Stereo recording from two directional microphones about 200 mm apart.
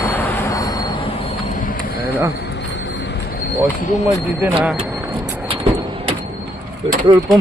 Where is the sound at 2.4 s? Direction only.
60° left (ahead or behind).